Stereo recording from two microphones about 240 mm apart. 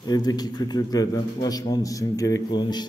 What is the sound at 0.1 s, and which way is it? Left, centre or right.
A man's voice, centre.